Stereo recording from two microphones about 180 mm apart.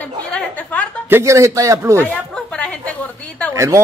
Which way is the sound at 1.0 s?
15° right (ahead or behind).